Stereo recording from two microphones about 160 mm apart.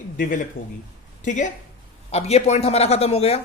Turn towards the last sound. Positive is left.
turn(degrees=40)  # may be behind; listen again after turning